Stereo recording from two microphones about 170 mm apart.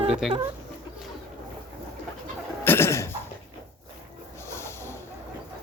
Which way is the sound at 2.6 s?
15° left (ahead or behind).